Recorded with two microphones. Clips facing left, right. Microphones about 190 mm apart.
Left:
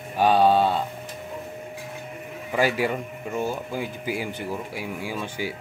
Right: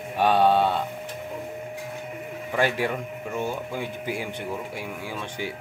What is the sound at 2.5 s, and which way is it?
Speech, 5° left (ahead or behind).